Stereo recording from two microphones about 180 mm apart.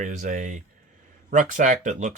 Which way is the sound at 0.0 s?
45° right (ahead or behind).